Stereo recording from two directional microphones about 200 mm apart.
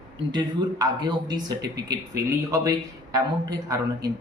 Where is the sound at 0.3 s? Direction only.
20° right (ahead or behind).